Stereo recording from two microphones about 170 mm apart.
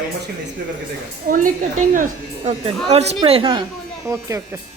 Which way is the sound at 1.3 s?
55° right (ahead or behind).